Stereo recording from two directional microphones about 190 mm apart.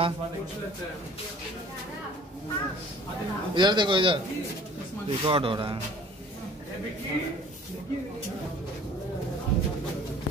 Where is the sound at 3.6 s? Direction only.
25° right (ahead or behind).